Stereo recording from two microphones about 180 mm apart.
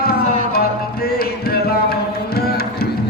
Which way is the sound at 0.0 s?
60° left (ahead or behind).